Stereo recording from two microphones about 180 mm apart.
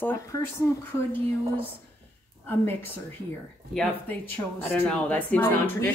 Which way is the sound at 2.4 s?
10° left (ahead or behind).